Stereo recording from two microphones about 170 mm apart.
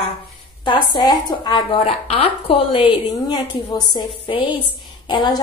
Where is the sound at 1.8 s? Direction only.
35° left (ahead or behind).